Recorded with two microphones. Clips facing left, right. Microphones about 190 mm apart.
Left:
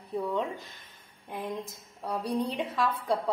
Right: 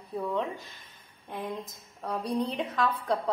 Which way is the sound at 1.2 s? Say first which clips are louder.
Even; centre (ahead or behind).